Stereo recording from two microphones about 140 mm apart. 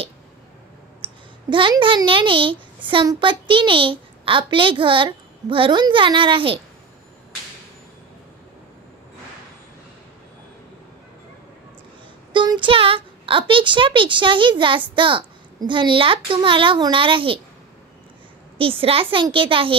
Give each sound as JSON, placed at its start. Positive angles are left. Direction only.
{"t": 1.0, "sound": "a child's voice", "side_deg": -35}
{"t": 12.3, "sound": "a sound", "side_deg": -35}
{"t": 15.0, "sound": "a child's voice", "side_deg": -35}
{"t": 18.6, "sound": "a child's voice", "side_deg": -40}